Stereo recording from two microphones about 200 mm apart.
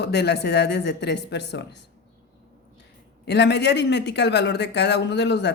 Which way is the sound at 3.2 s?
55° left (ahead or behind).